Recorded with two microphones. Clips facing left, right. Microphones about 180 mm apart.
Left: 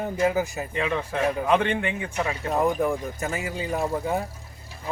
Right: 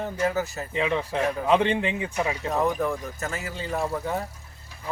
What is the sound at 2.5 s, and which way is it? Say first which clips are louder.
Speech: left 3 dB; 10° left (ahead or behind).